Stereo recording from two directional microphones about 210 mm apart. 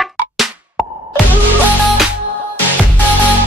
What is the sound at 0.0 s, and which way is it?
Music, centre (ahead or behind).